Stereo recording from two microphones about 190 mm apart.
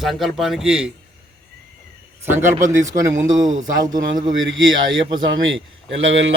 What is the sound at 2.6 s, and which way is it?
Speech, 40° right (ahead or behind).